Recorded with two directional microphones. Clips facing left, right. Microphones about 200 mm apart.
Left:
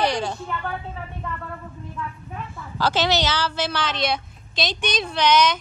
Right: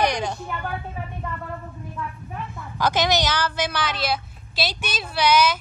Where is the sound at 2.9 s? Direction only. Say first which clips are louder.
Even; 15° right (ahead or behind).